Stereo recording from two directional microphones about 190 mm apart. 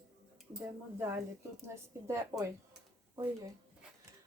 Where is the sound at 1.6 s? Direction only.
15° right (ahead or behind).